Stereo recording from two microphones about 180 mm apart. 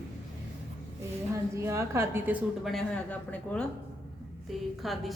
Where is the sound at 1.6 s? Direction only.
15° right (ahead or behind); by 3.6 s 5° left (ahead or behind).